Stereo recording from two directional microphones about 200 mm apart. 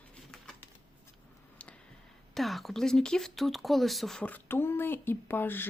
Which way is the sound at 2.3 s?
Centre (ahead or behind).